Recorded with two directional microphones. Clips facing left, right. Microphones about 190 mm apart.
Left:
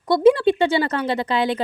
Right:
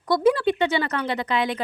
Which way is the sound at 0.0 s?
25° left (ahead or behind).